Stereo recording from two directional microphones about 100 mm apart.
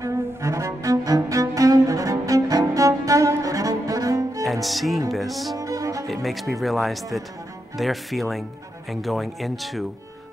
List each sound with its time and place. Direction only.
0.0 s music: 30° right (ahead or behind)
4.4 s cello: centre (ahead or behind)
5.1 s music: centre (ahead or behind)
5.6 s music: 35° right (ahead or behind)
6.0 s speech: centre (ahead or behind)